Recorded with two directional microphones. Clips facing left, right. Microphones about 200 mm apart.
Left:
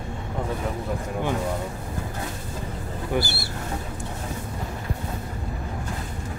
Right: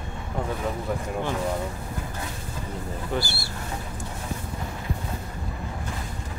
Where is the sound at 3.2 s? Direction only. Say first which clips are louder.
Left 6 dB; 20° left (ahead or behind).